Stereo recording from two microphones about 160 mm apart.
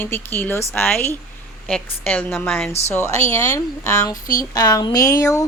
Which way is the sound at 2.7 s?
40° left (ahead or behind).